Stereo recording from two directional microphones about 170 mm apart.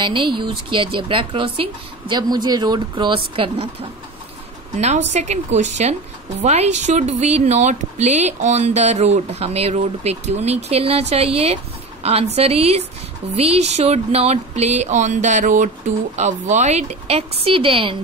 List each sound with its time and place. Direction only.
0.0 s a woman's voice: 30° right (ahead or behind)
4.7 s a woman's voice: 40° right (ahead or behind)